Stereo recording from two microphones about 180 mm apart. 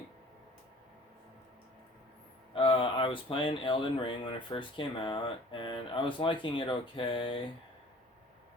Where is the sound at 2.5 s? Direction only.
30° left (ahead or behind).